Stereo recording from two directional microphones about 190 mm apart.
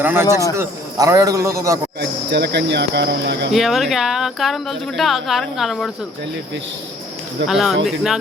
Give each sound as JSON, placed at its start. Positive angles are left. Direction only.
{"t": 0.0, "sound": "a man's voice", "side_deg": -10}
{"t": 2.0, "sound": "speech", "side_deg": -60}
{"t": 3.5, "sound": "speech", "side_deg": 0}
{"t": 7.4, "sound": "speech", "side_deg": 0}